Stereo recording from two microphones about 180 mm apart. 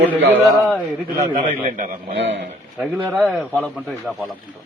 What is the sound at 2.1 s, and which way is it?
Speech, 90° right.